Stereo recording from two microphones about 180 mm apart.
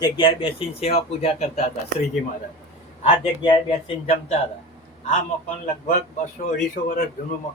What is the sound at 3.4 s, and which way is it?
Speech, 35° left (ahead or behind).